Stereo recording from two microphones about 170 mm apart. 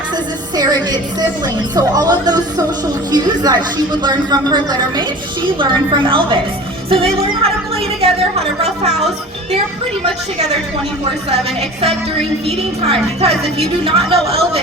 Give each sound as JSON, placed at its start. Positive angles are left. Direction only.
{"t": 0.5, "sound": "a woman's voice", "side_deg": -25}
{"t": 12.5, "sound": "a woman's voice", "side_deg": -35}